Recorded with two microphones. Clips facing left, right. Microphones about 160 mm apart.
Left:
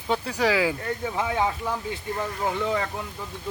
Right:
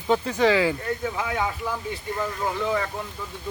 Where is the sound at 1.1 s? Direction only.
25° left (ahead or behind).